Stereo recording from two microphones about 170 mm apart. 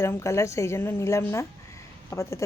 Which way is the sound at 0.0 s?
15° left (ahead or behind).